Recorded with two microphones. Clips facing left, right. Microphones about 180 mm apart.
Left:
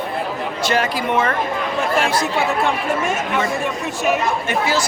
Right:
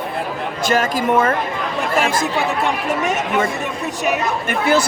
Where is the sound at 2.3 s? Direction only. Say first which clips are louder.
Left 1 dB; centre (ahead or behind).